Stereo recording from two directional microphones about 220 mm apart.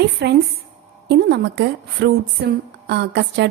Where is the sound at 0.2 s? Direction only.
50° right (ahead or behind).